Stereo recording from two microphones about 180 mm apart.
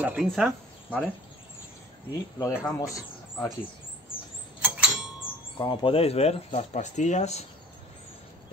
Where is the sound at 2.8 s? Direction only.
20° left (ahead or behind).